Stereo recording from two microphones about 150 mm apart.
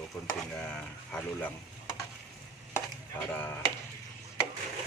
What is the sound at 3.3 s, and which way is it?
Speech, 10° left (ahead or behind).